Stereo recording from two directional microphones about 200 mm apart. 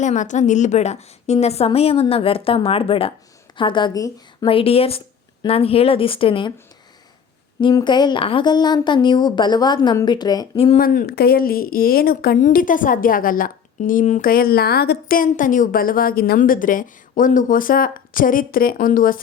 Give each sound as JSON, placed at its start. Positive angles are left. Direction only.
{"t": 0.0, "sound": "a woman's voice", "side_deg": 40}
{"t": 7.6, "sound": "a woman's voice", "side_deg": 20}
{"t": 10.8, "sound": "a woman's voice", "side_deg": 45}